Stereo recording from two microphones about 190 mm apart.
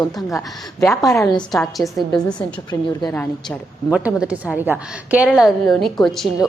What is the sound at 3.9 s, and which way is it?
A woman's voice, 5° right (ahead or behind).